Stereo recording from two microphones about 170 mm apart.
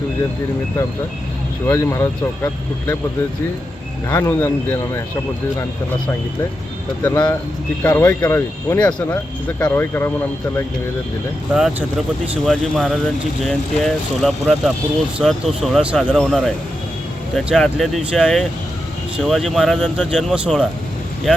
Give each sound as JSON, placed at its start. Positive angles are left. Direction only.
{"t": 1.6, "sound": "speech", "side_deg": 15}
{"t": 4.1, "sound": "speech", "side_deg": 20}
{"t": 7.0, "sound": "speech", "side_deg": 20}
{"t": 11.5, "sound": "speech", "side_deg": 0}
{"t": 12.5, "sound": "speech", "side_deg": 0}